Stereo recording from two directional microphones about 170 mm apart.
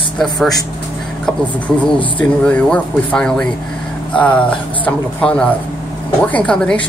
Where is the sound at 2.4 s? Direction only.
5° left (ahead or behind).